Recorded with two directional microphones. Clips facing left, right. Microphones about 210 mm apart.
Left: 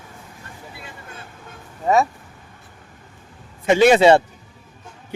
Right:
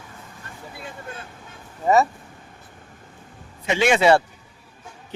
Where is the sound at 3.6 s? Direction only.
45° left (ahead or behind); by 4.2 s 25° left (ahead or behind).